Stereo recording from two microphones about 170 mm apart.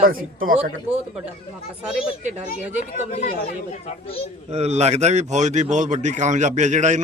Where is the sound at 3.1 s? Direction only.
55° left (ahead or behind).